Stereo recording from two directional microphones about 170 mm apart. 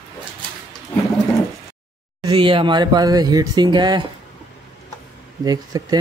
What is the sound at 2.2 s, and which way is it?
Speech, 30° right (ahead or behind).